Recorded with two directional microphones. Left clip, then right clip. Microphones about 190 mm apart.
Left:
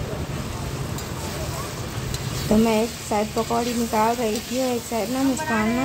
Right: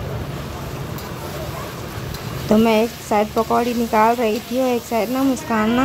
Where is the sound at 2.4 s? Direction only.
15° right (ahead or behind).